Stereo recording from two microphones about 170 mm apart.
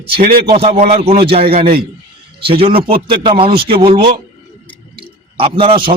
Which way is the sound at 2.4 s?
35° right (ahead or behind).